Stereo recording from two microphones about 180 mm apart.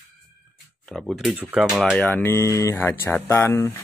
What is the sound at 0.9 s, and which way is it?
Speech, centre (ahead or behind).